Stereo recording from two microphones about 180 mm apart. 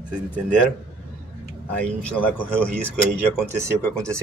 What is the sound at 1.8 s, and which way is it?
Speech, 10° left (ahead or behind).